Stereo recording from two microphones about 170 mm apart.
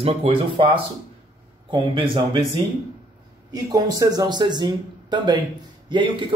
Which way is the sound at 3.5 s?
25° right (ahead or behind).